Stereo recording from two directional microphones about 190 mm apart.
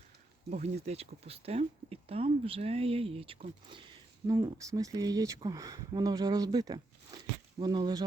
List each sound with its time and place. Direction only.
0.5 s speech: 35° right (ahead or behind)